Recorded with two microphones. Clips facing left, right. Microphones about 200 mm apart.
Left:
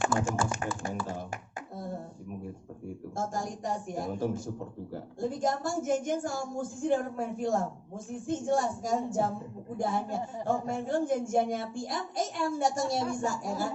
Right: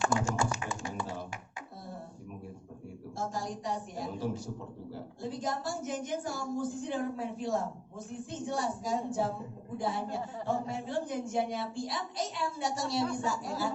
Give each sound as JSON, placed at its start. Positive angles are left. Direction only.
{"t": 0.5, "sound": "tap", "side_deg": 50}
{"t": 3.2, "sound": "a man's voice", "side_deg": 50}